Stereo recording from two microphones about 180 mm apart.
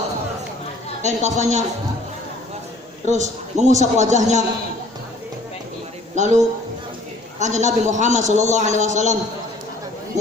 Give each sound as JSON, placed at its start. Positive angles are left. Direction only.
{"t": 1.0, "sound": "a man's voice", "side_deg": -40}
{"t": 3.1, "sound": "a man's voice", "side_deg": -40}
{"t": 6.1, "sound": "a man's voice", "side_deg": -40}